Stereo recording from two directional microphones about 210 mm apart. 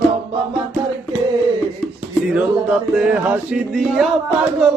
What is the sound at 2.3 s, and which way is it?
Speech, 5° right (ahead or behind).